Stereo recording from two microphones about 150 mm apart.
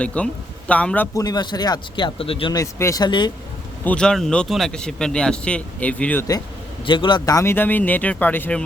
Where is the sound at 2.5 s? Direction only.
20° left (ahead or behind).